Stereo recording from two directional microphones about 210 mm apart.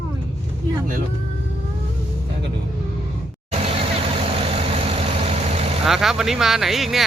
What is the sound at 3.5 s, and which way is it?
Vehicle, 30° right (ahead or behind).